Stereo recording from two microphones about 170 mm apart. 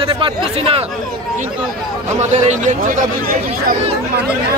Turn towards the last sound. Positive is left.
turn(degrees=-55)  # may be behind; listen again after turning